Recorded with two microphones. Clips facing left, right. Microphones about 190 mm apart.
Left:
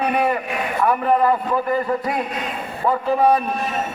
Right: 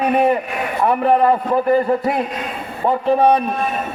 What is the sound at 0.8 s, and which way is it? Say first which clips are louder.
A man's voice: right 3 dB; 30° right (ahead or behind).